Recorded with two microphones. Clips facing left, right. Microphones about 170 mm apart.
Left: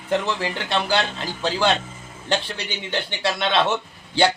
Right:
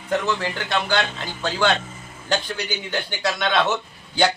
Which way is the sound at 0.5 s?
30° left (ahead or behind).